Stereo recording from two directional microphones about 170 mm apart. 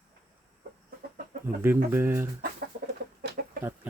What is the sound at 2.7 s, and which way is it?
Chicken, 50° right (ahead or behind).